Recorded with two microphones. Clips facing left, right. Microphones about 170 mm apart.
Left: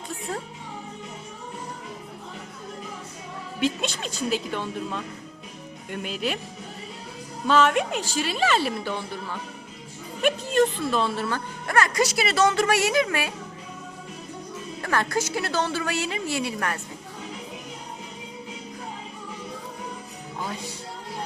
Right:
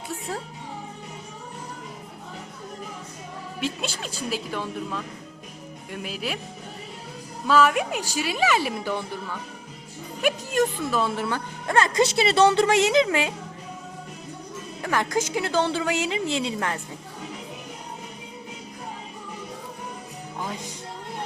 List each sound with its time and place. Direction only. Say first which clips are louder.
3.6 s a woman's voice: left 4 dB; 5° right (ahead or behind)
7.4 s a woman's voice: even; 5° right (ahead or behind)
10.2 s a woman's voice: left 2 dB; 10° right (ahead or behind)
14.8 s a woman's voice: right 1 dB; 15° right (ahead or behind)
20.4 s music: even; 15° right (ahead or behind)